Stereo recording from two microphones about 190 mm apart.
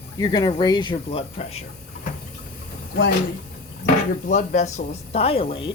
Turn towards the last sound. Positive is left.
turn(degrees=30)  # may be behind; listen again after turning